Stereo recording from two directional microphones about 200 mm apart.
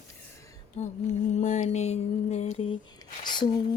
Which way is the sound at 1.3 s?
35° left (ahead or behind).